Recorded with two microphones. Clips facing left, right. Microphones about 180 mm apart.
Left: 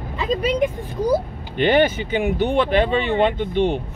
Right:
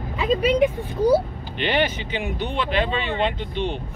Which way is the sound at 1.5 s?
45° left (ahead or behind).